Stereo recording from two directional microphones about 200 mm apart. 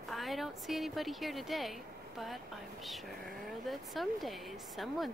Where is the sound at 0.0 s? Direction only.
Centre (ahead or behind).